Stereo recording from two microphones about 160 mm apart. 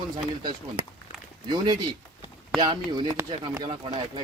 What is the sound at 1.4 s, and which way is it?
Speech, 25° right (ahead or behind).